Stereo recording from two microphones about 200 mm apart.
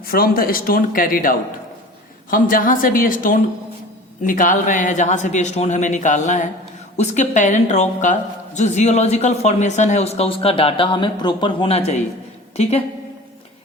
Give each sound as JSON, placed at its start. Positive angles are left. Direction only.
{"t": 0.0, "sound": "a woman's voice", "side_deg": 50}